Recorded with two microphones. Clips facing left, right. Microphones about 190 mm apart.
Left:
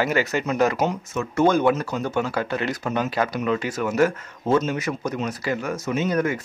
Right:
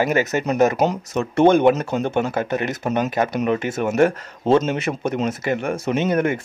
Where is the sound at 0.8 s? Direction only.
35° right (ahead or behind).